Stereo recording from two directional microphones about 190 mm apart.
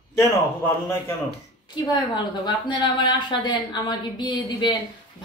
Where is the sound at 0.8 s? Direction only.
15° left (ahead or behind).